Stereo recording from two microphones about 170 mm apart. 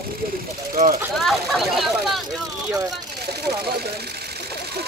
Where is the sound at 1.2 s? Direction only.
Centre (ahead or behind).